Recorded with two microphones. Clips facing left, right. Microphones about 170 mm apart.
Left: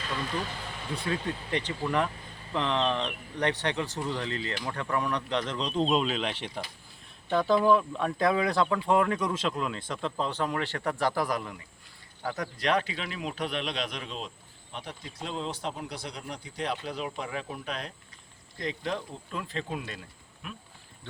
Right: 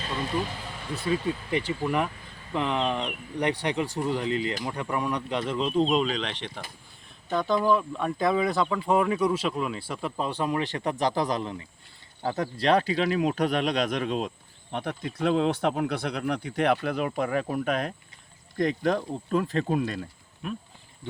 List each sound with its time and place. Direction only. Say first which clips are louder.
0.9 s speech: right 5 dB; 5° right (ahead or behind); by 20.0 s 40° right (ahead or behind)